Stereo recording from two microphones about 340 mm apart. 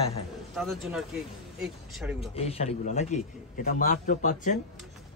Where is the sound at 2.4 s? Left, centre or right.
Centre.